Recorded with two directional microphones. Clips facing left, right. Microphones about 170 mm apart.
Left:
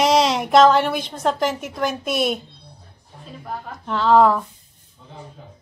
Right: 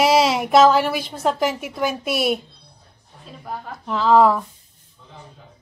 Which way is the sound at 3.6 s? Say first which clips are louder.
Even; centre (ahead or behind).